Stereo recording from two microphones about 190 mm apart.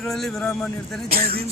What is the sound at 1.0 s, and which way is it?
Music, 50° right (ahead or behind).